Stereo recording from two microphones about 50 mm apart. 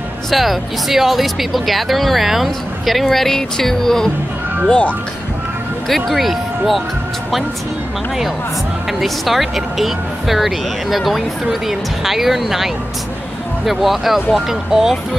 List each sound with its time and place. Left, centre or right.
0.3 s speech: centre
4.6 s speech: left
5.9 s speech: centre
9.0 s speech: centre